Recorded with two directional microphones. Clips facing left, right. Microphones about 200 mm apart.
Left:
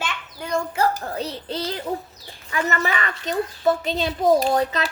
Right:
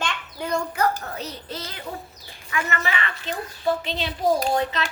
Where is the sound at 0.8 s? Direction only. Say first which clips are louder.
Left 2 dB; 30° left (ahead or behind).